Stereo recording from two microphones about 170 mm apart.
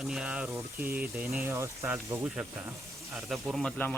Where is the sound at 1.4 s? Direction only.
15° right (ahead or behind).